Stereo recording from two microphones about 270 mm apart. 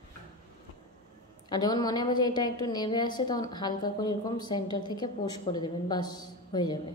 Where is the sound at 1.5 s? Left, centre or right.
Centre.